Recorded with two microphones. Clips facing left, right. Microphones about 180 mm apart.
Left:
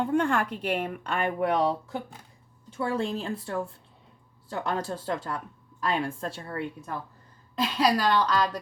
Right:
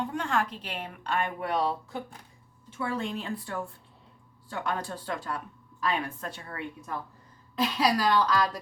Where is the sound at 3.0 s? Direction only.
30° left (ahead or behind).